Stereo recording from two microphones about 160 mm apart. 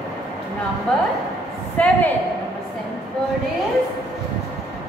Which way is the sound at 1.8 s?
10° left (ahead or behind).